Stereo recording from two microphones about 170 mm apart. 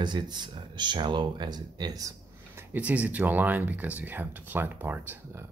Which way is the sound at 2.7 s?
10° right (ahead or behind).